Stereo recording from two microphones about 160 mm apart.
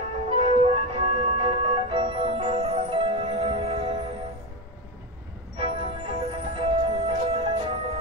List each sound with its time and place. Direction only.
0.3 s music: 35° right (ahead or behind)
5.6 s music: 35° right (ahead or behind)